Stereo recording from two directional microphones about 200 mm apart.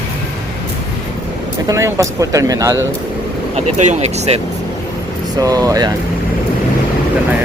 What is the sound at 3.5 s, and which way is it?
Speech, 35° right (ahead or behind).